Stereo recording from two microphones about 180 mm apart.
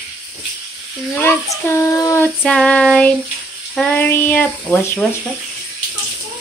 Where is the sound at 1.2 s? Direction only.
15° left (ahead or behind).